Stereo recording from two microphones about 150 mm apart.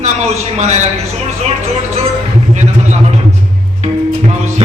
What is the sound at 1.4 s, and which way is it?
Music, 45° right (ahead or behind).